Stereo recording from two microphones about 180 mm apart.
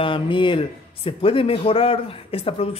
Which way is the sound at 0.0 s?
30° left (ahead or behind).